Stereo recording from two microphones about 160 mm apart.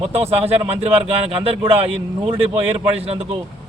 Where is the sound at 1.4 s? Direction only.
40° right (ahead or behind).